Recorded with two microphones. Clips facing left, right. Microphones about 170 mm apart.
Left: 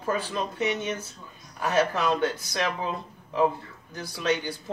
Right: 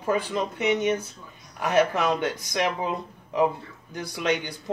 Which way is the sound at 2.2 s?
15° right (ahead or behind).